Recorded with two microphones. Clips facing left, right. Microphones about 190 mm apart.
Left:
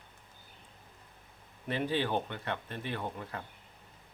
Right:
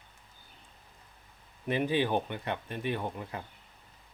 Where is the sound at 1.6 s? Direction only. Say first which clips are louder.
Right 3 dB; 15° right (ahead or behind).